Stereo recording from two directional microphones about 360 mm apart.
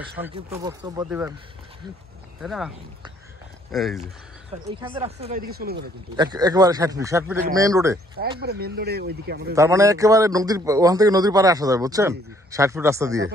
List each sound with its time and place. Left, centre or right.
0.2 s a man's voice: centre
2.4 s speech: centre
3.7 s speech: centre
4.5 s speech: centre
6.1 s a man's voice: centre
8.4 s speech: right
9.6 s a man's voice: centre